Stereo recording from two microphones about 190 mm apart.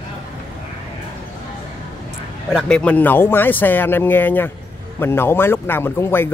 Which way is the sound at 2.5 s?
5° left (ahead or behind).